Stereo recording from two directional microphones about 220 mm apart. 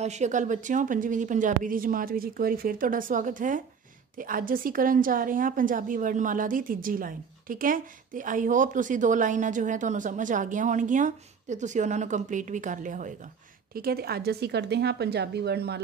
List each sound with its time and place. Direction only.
0.0 s a woman's voice: 30° right (ahead or behind); by 15.8 s 45° right (ahead or behind)